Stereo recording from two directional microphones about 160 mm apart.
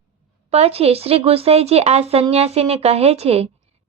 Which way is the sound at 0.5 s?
40° right (ahead or behind).